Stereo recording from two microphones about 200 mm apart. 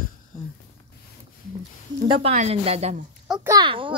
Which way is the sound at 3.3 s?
10° right (ahead or behind).